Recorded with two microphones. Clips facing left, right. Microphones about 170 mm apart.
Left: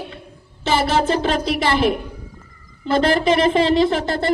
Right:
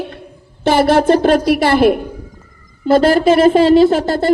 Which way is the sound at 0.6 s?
55° right (ahead or behind).